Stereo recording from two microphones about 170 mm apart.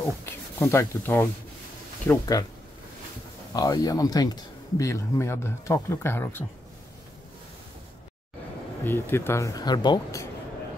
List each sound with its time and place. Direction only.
0.0 s speech: 15° left (ahead or behind)
3.5 s speech: 20° left (ahead or behind)
8.8 s speech: 15° left (ahead or behind)